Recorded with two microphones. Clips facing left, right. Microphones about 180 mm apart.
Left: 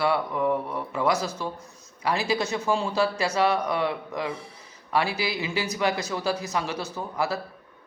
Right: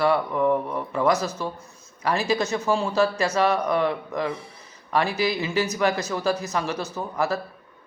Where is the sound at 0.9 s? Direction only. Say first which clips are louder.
Right 3 dB; 10° left (ahead or behind).